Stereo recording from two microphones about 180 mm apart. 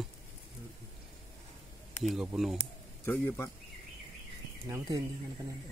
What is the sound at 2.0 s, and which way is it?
Speech, centre (ahead or behind).